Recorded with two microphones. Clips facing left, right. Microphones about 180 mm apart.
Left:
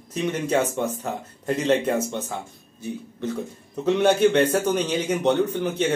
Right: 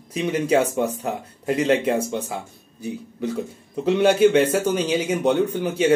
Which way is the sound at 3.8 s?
5° right (ahead or behind).